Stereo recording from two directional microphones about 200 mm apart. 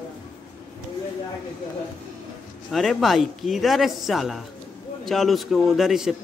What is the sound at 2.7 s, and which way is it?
A man's voice, centre (ahead or behind).